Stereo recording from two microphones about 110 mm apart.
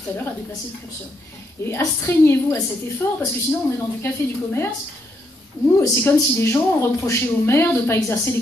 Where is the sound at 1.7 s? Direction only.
25° left (ahead or behind).